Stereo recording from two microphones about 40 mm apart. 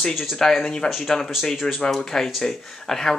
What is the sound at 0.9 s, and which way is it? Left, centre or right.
Speech, centre.